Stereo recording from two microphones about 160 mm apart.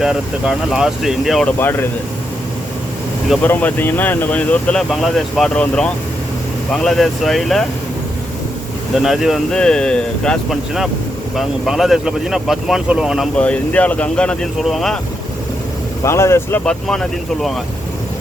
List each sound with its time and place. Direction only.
0.0 s speech: 5° right (ahead or behind)
1.5 s speech: 15° left (ahead or behind)
3.4 s speech: 10° left (ahead or behind)
9.0 s speech: centre (ahead or behind)
16.0 s speech: 15° left (ahead or behind)
16.6 s speech: 5° left (ahead or behind)